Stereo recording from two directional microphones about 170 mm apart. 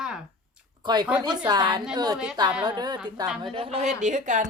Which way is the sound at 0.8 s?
25° right (ahead or behind).